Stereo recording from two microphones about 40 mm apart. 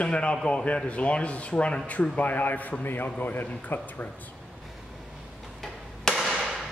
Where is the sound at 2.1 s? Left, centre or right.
Left.